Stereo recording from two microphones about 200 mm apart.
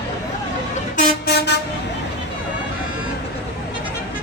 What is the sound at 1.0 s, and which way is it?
Vehicle, 40° left (ahead or behind).